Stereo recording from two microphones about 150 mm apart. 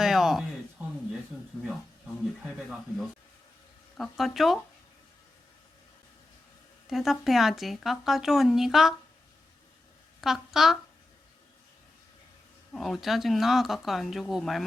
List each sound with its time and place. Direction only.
0.0 s a sound: centre (ahead or behind)
2.4 s speech: centre (ahead or behind)
6.8 s speech: centre (ahead or behind)
10.2 s a woman's voice: centre (ahead or behind)
12.7 s speech: centre (ahead or behind)